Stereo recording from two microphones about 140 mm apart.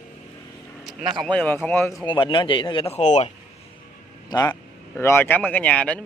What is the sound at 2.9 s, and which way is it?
Speech, 55° left (ahead or behind).